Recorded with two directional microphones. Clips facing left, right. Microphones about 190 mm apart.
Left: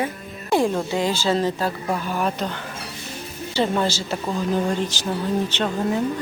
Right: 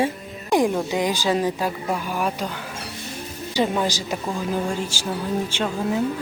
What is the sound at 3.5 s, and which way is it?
Speech, 10° right (ahead or behind).